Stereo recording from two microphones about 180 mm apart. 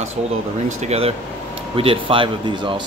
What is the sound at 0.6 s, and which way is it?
Speech, 35° right (ahead or behind).